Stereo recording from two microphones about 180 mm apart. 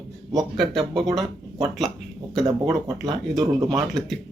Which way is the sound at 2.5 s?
25° right (ahead or behind).